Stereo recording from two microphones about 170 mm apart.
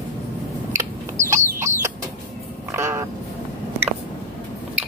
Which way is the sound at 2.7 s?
15° right (ahead or behind).